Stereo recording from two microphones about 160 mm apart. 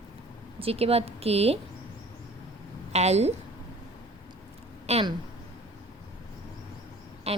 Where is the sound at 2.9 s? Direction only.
45° right (ahead or behind).